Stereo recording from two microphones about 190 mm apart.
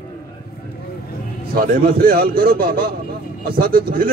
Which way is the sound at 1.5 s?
50° right (ahead or behind).